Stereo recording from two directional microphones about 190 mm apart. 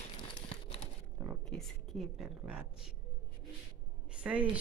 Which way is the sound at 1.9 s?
Centre (ahead or behind).